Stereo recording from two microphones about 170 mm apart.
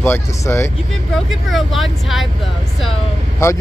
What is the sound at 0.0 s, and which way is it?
Speech, 15° left (ahead or behind).